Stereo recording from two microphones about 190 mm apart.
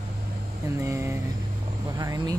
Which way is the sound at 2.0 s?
20° right (ahead or behind).